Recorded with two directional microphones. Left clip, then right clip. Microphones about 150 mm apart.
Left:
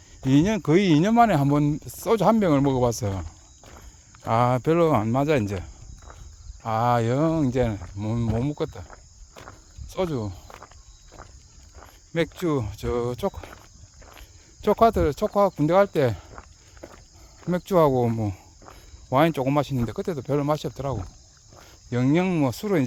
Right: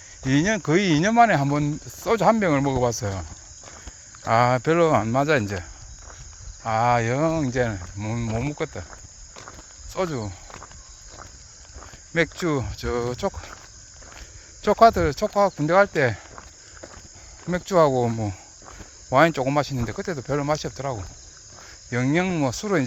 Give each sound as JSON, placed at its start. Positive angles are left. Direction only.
{"t": 0.3, "sound": "speech", "side_deg": 40}
{"t": 4.2, "sound": "cricket", "side_deg": 25}
{"t": 6.7, "sound": "speech", "side_deg": 35}
{"t": 8.4, "sound": "cricket", "side_deg": 40}
{"t": 8.9, "sound": "insect", "side_deg": -30}
{"t": 9.9, "sound": "speech", "side_deg": 35}
{"t": 12.1, "sound": "cricket", "side_deg": 20}
{"t": 14.6, "sound": "cricket", "side_deg": 25}
{"t": 15.4, "sound": "speech", "side_deg": 35}
{"t": 17.5, "sound": "speech", "side_deg": 40}
{"t": 19.1, "sound": "speech", "side_deg": 20}